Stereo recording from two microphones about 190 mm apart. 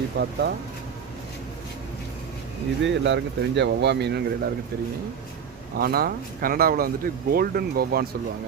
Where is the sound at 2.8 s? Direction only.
70° right (ahead or behind).